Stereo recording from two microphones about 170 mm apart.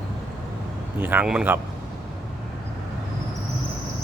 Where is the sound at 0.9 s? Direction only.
10° right (ahead or behind).